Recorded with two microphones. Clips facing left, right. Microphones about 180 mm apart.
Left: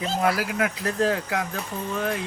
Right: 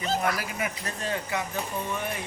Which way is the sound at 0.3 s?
90° left.